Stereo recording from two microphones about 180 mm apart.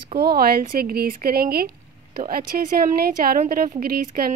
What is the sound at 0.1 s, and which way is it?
A woman's voice, 60° right (ahead or behind).